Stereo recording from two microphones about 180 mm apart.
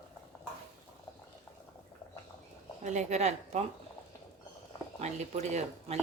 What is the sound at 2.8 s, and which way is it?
Speech, 40° right (ahead or behind).